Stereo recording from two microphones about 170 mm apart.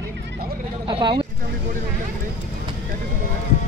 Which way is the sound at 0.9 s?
30° right (ahead or behind).